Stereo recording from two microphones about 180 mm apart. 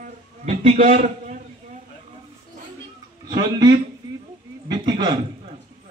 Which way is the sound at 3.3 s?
20° right (ahead or behind).